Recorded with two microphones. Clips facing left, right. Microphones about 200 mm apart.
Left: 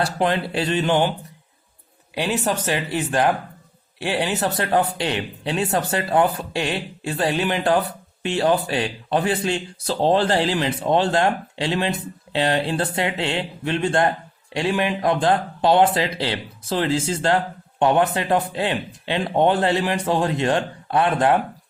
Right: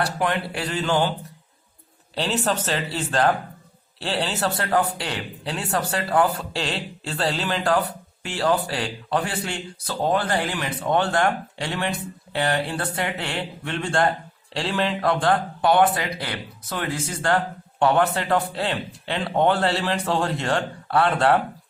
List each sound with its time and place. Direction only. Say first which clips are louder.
0.0 s speech: left 3 dB; 25° left (ahead or behind)
2.1 s speech: left 1 dB; 10° left (ahead or behind)